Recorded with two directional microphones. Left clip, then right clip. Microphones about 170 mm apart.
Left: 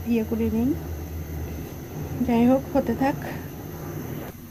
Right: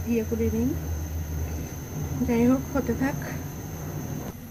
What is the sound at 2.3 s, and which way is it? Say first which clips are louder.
Speech: left 3 dB; 25° left (ahead or behind).